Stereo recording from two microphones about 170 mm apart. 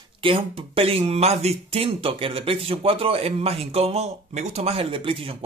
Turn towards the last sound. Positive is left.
turn(degrees=-30)  # may be behind; listen again after turning